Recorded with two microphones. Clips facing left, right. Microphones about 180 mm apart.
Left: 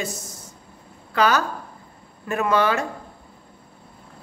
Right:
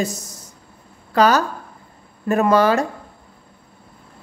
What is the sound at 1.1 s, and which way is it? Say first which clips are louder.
A woman's voice: right 4 dB; 40° right (ahead or behind).